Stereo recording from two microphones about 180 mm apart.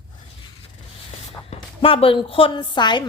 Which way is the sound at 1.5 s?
30° left (ahead or behind).